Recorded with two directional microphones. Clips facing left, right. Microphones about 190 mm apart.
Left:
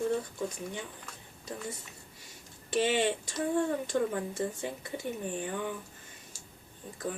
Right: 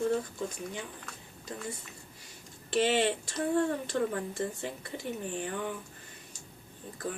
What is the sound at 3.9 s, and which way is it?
Speech, 10° left (ahead or behind).